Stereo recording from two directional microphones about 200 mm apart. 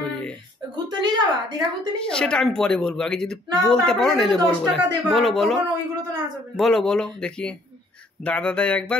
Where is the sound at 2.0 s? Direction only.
5° left (ahead or behind).